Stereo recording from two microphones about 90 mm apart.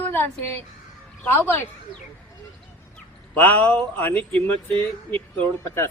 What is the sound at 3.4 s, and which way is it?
Speech, 20° left (ahead or behind).